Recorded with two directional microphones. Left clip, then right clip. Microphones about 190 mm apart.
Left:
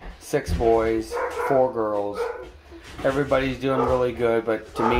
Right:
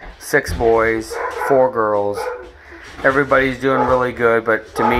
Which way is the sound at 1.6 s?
10° right (ahead or behind).